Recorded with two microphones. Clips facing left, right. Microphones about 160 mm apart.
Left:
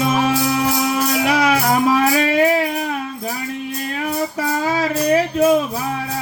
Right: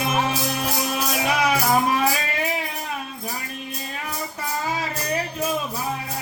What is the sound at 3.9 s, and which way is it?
Child singing, 65° left (ahead or behind).